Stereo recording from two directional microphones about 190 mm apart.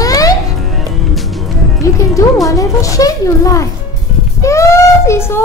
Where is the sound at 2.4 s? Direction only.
15° left (ahead or behind).